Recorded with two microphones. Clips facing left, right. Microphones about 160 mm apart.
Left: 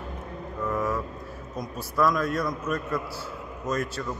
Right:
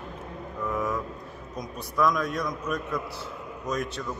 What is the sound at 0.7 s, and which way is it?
Vehicle, centre (ahead or behind).